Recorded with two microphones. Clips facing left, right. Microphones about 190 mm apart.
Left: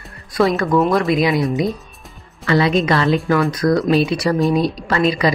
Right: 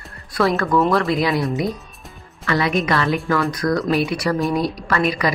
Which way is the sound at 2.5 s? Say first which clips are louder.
Left 4 dB; 30° left (ahead or behind).